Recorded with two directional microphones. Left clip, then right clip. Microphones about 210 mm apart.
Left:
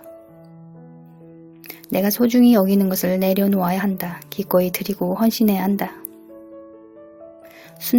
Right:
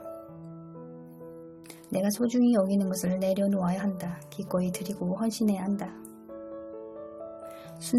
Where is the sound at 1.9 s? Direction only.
30° left (ahead or behind).